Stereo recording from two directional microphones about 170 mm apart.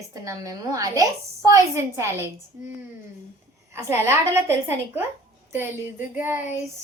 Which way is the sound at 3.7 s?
15° right (ahead or behind).